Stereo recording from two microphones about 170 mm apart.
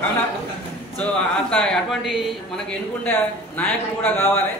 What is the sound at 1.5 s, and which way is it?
Speech, 5° left (ahead or behind).